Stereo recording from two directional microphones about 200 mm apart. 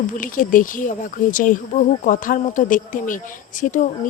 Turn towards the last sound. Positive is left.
turn(degrees=40)  # may be behind; listen again after turning